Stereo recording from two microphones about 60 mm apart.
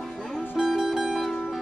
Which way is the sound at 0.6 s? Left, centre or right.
Centre.